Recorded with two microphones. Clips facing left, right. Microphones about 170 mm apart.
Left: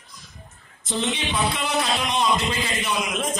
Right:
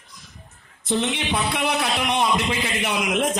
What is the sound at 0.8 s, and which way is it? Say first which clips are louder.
A man's voice: right 3 dB; 65° right (ahead or behind).